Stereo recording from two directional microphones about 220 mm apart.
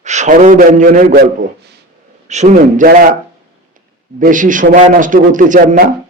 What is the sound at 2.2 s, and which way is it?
Speech, 30° right (ahead or behind).